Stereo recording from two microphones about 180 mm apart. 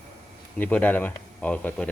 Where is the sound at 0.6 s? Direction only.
10° left (ahead or behind).